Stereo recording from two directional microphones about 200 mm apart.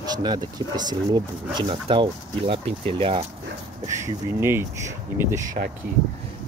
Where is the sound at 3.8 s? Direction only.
15° right (ahead or behind).